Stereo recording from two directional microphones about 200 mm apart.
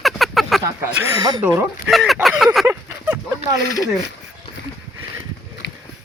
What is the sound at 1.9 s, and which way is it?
Speech, centre (ahead or behind).